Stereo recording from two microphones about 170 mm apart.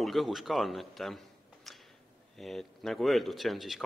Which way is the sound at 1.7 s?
Centre (ahead or behind).